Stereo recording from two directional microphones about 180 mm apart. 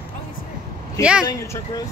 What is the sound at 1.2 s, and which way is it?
Speech, 20° left (ahead or behind).